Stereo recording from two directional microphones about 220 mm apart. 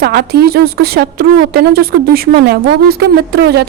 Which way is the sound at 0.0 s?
45° right (ahead or behind).